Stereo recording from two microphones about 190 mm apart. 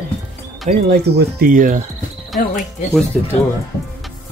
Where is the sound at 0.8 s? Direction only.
55° right (ahead or behind).